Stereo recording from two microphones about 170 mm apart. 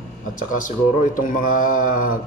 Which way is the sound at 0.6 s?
50° left (ahead or behind).